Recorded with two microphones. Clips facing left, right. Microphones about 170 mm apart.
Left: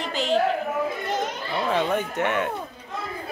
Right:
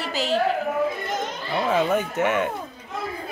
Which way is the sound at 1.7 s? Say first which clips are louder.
Right 3 dB; 5° right (ahead or behind).